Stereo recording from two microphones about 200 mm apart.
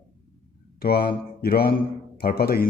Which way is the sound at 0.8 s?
50° left (ahead or behind).